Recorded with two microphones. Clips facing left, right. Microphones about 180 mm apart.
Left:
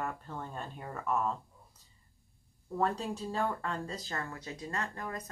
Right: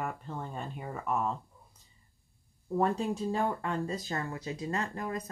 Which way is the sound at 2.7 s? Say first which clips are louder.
Right 4 dB; 10° right (ahead or behind).